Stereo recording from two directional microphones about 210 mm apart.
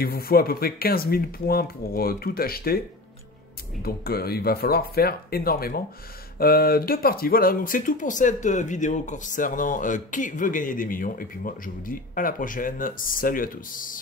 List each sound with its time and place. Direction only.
0.0 s speech: 45° left (ahead or behind)
3.8 s speech: 45° left (ahead or behind)